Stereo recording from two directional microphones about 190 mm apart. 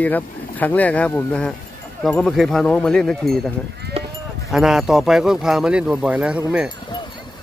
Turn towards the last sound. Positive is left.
turn(degrees=-5)  # may be behind; listen again after turning